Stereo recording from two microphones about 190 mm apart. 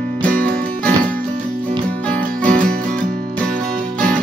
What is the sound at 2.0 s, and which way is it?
Music, 5° left (ahead or behind).